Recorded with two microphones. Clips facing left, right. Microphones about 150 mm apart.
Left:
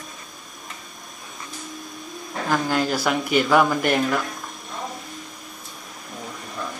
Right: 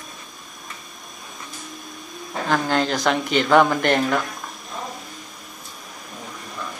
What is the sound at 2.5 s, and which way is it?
Speech, 10° left (ahead or behind).